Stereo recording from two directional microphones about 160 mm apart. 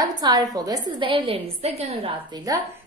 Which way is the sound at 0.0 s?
25° right (ahead or behind).